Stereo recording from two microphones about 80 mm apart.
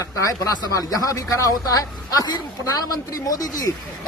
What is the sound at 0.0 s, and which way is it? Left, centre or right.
A woman's voice, left.